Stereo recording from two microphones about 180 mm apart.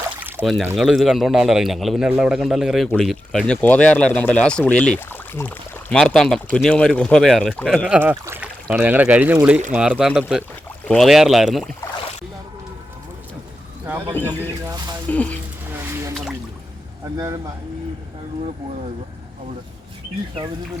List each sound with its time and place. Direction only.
0.3 s speech: centre (ahead or behind)
13.8 s speech: 10° right (ahead or behind)
15.1 s speech: 10° left (ahead or behind)
17.2 s speech: 20° right (ahead or behind)